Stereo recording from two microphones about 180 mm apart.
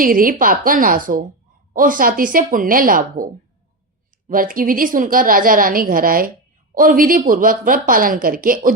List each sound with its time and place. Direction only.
0.0 s a woman's voice: 50° right (ahead or behind)
4.3 s a woman's voice: 50° right (ahead or behind)